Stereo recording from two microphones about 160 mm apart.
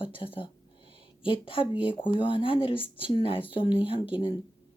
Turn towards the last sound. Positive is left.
turn(degrees=30)  # may be behind; listen again after turning